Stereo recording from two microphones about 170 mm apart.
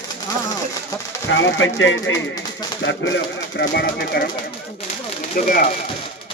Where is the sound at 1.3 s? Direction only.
90° left.